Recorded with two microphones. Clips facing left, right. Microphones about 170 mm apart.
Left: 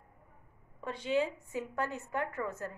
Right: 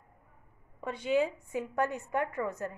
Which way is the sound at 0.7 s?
10° right (ahead or behind).